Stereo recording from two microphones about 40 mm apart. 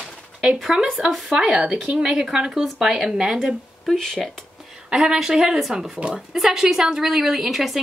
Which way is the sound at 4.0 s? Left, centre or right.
Centre.